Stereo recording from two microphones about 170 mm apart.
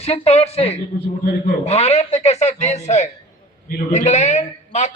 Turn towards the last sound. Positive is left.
turn(degrees=45)  # may be behind; listen again after turning